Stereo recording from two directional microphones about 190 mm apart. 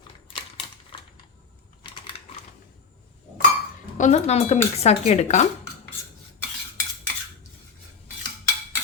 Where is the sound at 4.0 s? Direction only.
35° left (ahead or behind).